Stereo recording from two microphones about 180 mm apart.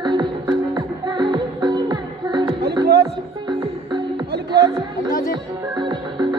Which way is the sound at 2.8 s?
70° right (ahead or behind).